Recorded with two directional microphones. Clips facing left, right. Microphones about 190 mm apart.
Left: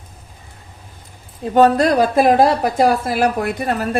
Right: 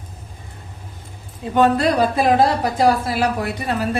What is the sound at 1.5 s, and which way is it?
A woman's voice, 40° left (ahead or behind).